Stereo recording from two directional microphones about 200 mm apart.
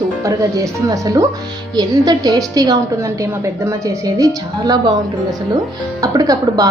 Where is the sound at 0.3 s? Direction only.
15° right (ahead or behind).